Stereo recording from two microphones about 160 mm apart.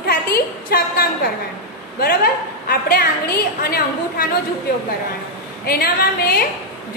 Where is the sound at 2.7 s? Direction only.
70° left (ahead or behind).